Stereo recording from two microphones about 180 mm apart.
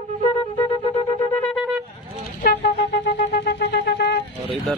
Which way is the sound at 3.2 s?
45° left (ahead or behind).